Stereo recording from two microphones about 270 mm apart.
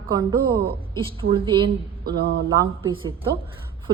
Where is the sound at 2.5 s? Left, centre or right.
Centre.